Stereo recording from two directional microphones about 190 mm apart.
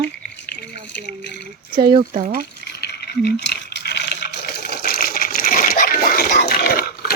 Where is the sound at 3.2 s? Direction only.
60° left (ahead or behind).